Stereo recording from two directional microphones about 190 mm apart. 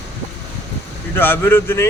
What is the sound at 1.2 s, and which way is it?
Speech, 10° left (ahead or behind).